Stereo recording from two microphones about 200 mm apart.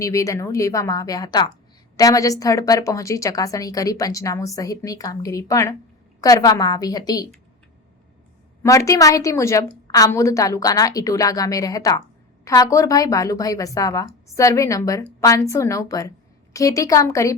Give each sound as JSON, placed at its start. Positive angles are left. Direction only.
{"t": 0.0, "sound": "a woman's voice", "side_deg": 15}
{"t": 8.6, "sound": "a woman's voice", "side_deg": 15}